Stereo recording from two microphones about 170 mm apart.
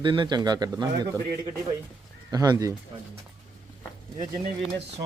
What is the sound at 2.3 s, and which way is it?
Speech, 20° right (ahead or behind).